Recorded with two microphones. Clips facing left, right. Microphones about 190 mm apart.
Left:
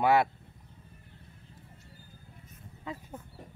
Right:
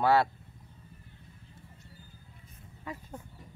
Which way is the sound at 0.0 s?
15° left (ahead or behind).